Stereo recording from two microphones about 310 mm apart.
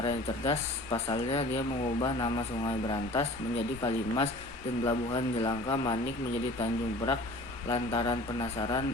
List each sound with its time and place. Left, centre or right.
0.0 s speech: centre